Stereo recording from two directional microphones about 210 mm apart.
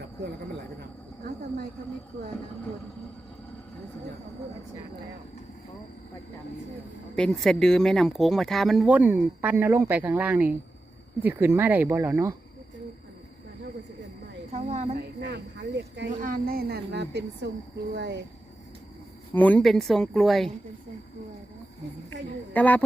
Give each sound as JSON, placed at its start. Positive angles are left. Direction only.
{"t": 7.2, "sound": "speech", "side_deg": 0}
{"t": 14.5, "sound": "a sound", "side_deg": -35}
{"t": 15.2, "sound": "speech", "side_deg": -55}
{"t": 16.2, "sound": "a woman's voice", "side_deg": -45}
{"t": 19.3, "sound": "speech", "side_deg": 10}
{"t": 22.5, "sound": "speech", "side_deg": 10}